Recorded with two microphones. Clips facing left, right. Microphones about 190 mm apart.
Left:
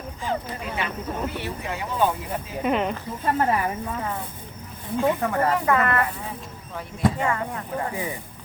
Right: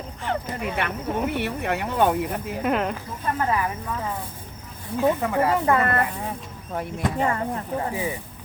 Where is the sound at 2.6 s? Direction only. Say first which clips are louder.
Left 1 dB; centre (ahead or behind).